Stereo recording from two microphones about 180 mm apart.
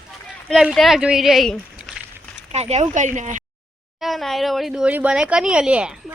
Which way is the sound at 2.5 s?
35° right (ahead or behind).